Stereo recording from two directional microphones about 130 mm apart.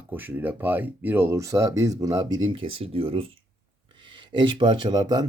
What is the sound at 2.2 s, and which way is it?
Speech, 40° right (ahead or behind).